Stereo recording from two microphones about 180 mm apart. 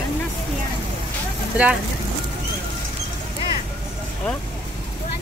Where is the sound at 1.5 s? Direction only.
5° right (ahead or behind).